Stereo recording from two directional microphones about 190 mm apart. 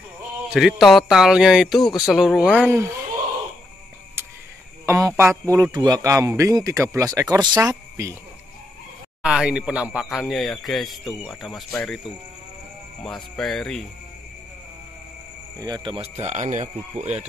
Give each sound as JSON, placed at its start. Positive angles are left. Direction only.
{"t": 0.5, "sound": "speech", "side_deg": 0}
{"t": 1.8, "sound": "speech", "side_deg": 20}
{"t": 2.0, "sound": "speech", "side_deg": 0}
{"t": 4.8, "sound": "speech", "side_deg": -15}
{"t": 9.2, "sound": "speech", "side_deg": -5}
{"t": 13.0, "sound": "speech", "side_deg": 0}
{"t": 15.6, "sound": "speech", "side_deg": -25}